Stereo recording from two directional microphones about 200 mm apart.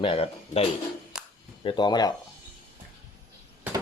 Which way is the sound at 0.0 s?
30° left (ahead or behind).